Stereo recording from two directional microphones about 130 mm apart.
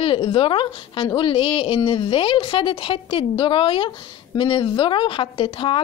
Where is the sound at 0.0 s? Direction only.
45° left (ahead or behind).